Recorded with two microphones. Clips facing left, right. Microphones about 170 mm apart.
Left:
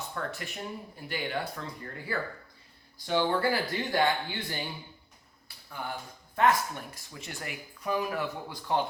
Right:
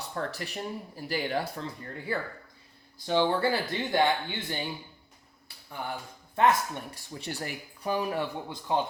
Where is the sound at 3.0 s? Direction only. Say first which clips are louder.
Right 2 dB; 20° right (ahead or behind).